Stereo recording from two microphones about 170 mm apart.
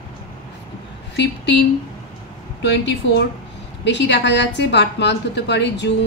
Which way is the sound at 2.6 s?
90° left.